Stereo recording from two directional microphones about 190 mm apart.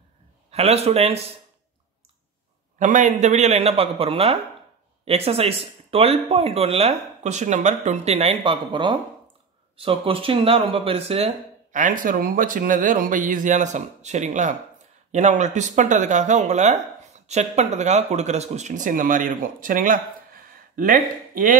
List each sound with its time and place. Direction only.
0.5 s speech: 35° right (ahead or behind)
2.8 s speech: 40° right (ahead or behind)